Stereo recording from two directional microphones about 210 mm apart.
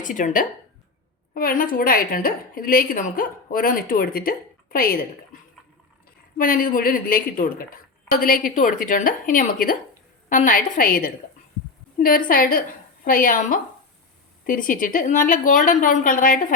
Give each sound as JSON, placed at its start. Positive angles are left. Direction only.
{"t": 0.0, "sound": "a woman's voice", "side_deg": 35}